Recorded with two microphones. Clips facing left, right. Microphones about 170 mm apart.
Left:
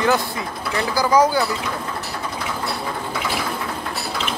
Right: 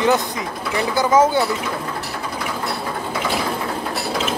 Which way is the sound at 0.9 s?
20° right (ahead or behind).